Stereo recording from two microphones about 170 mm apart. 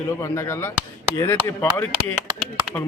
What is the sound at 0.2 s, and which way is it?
Speech, 15° left (ahead or behind).